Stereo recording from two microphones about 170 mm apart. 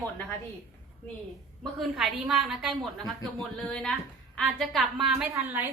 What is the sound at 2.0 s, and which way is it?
A woman's voice, centre (ahead or behind).